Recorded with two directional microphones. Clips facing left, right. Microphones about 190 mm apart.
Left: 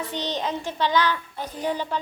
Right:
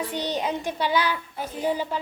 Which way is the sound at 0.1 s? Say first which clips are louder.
Right 1 dB; 10° right (ahead or behind).